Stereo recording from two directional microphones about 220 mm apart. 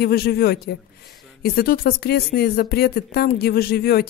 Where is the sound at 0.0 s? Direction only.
45° left (ahead or behind).